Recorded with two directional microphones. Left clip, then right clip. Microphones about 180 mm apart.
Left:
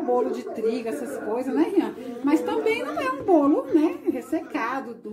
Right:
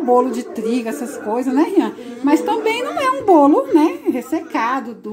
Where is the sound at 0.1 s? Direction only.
40° right (ahead or behind).